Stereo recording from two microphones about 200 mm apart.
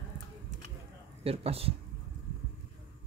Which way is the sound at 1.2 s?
30° right (ahead or behind).